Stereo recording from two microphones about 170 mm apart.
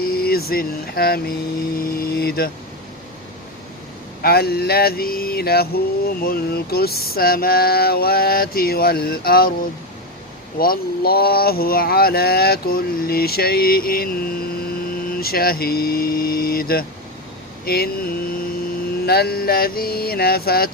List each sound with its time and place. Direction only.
0.0 s speech: 60° left (ahead or behind)
4.2 s speech: 65° left (ahead or behind)
10.6 s speech: 60° left (ahead or behind)